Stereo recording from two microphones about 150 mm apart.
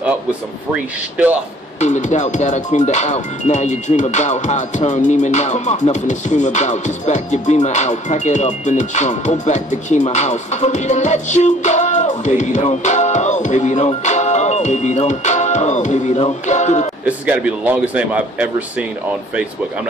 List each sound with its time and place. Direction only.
1.1 s speech: 10° right (ahead or behind)
1.8 s music: 50° left (ahead or behind)
17.0 s speech: 10° right (ahead or behind)